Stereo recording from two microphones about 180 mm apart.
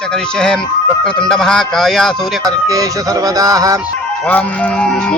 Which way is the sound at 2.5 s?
20° right (ahead or behind).